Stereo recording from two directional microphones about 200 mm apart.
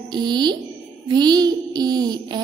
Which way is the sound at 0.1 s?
20° right (ahead or behind).